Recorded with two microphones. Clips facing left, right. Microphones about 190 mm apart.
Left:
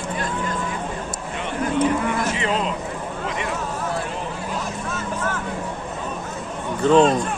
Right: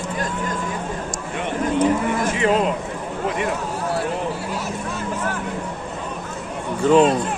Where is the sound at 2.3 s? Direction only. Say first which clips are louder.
Right 5 dB; 50° right (ahead or behind).